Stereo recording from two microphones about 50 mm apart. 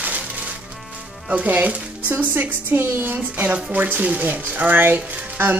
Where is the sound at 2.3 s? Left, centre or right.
Right.